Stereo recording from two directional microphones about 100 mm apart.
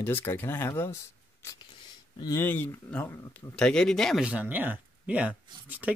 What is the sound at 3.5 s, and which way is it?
Speech, 5° left (ahead or behind).